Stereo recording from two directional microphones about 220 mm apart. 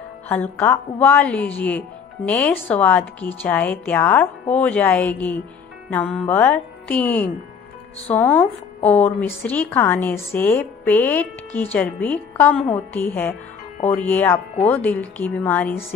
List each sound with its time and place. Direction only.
0.3 s a woman's voice: 10° left (ahead or behind)